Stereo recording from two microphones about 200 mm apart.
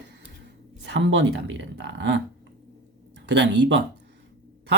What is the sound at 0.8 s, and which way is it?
Speech, 65° right (ahead or behind).